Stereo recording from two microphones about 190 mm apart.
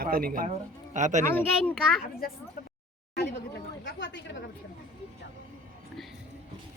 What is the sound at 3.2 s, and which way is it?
A woman's voice, 65° left (ahead or behind).